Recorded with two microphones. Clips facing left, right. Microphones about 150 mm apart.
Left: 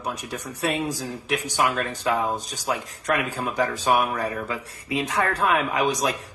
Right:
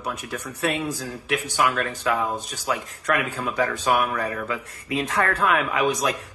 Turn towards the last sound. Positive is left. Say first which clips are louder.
# right 1 dB
turn(degrees=20)  # may be behind; listen again after turning